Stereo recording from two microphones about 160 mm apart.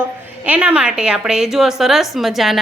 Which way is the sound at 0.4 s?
10° right (ahead or behind).